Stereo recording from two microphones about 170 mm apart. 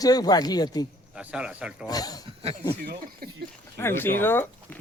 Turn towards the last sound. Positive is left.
turn(degrees=15)  # may be behind; listen again after turning